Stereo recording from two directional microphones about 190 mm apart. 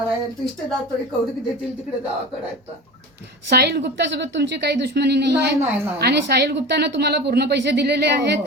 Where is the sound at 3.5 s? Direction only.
60° right (ahead or behind).